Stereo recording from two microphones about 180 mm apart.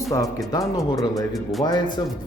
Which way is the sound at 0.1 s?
20° left (ahead or behind).